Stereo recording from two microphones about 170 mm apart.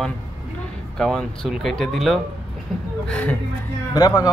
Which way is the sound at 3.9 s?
20° left (ahead or behind).